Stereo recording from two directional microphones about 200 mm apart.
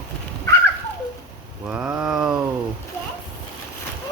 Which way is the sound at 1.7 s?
5° right (ahead or behind).